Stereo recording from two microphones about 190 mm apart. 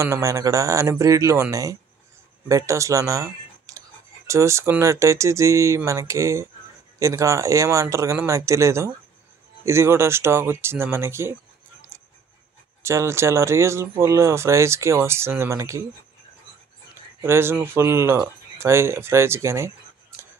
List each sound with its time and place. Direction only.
0.0 s speech: 15° right (ahead or behind)
12.8 s speech: 15° right (ahead or behind)
17.2 s speech: 15° right (ahead or behind)